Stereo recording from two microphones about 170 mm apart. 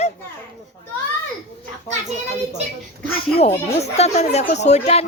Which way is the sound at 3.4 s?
40° left (ahead or behind).